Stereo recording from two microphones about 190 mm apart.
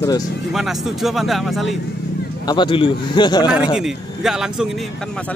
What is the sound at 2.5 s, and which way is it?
A man's voice, 25° left (ahead or behind).